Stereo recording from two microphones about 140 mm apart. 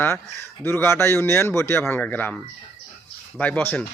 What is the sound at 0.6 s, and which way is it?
A man's voice, 15° left (ahead or behind).